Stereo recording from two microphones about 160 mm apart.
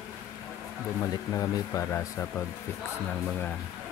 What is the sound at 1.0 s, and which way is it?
Speech, 20° left (ahead or behind).